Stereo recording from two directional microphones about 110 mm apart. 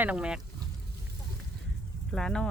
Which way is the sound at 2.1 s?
5° left (ahead or behind).